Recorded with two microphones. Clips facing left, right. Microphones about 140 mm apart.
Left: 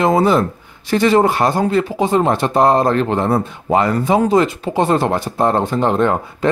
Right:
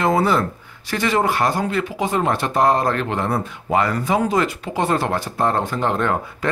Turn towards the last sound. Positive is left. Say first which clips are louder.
# left 6 dB
turn(degrees=25)  # may be behind; listen again after turning